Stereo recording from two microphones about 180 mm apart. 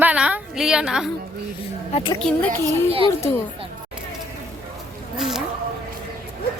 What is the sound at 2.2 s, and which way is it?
Speech, 10° left (ahead or behind).